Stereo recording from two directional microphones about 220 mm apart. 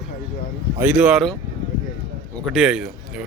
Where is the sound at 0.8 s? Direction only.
5° right (ahead or behind).